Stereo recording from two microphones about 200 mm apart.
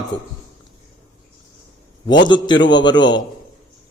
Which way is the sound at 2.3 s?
20° left (ahead or behind).